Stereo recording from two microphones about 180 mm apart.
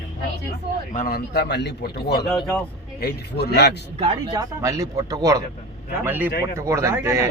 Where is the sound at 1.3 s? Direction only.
70° left (ahead or behind).